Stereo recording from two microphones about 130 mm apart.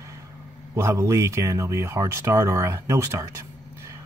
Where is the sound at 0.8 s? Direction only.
20° right (ahead or behind).